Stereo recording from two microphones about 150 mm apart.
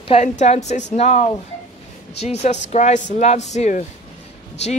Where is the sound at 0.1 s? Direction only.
50° left (ahead or behind).